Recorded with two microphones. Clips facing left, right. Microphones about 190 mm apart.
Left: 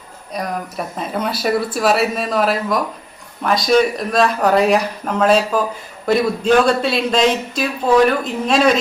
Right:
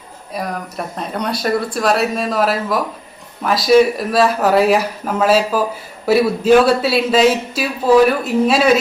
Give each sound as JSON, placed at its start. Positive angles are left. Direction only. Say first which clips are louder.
{"t": 0.3, "sound": "a man's voice", "louder": "even", "side_deg": 0}